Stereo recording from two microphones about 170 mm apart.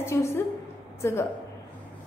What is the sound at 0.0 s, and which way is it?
A woman's voice, 15° left (ahead or behind).